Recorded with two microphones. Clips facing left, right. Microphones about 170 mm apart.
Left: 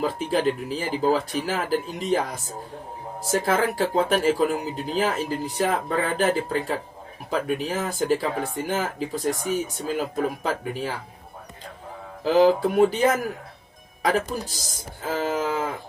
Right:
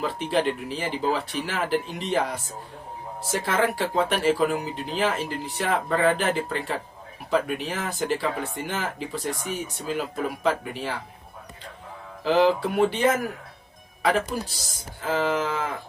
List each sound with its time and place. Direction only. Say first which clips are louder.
0.0 s speech: left 2 dB; 40° left (ahead or behind)
12.2 s speech: left 3 dB; 40° left (ahead or behind)